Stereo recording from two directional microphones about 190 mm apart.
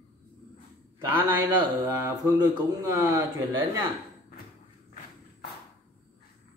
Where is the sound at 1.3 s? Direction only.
10° right (ahead or behind).